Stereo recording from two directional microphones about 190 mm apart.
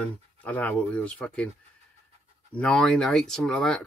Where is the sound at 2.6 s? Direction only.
5° left (ahead or behind).